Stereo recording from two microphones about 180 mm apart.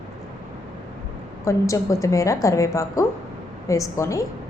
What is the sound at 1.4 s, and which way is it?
A woman's voice, 15° left (ahead or behind).